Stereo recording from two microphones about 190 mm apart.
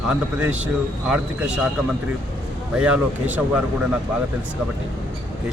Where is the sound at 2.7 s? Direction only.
5° right (ahead or behind).